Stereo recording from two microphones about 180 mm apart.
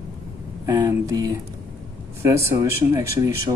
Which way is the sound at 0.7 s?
20° right (ahead or behind).